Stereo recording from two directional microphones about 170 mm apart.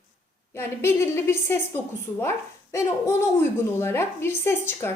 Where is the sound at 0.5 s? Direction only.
15° left (ahead or behind).